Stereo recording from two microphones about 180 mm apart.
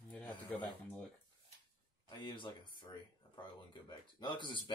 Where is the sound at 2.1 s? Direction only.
25° left (ahead or behind).